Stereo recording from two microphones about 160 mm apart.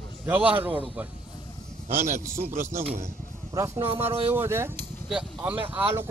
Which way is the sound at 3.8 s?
15° right (ahead or behind).